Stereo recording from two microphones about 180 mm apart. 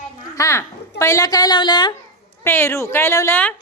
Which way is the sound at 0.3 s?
20° left (ahead or behind).